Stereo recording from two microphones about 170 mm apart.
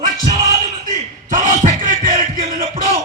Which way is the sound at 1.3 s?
45° right (ahead or behind).